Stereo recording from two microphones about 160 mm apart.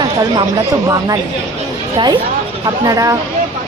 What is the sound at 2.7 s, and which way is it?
Speech, 20° right (ahead or behind).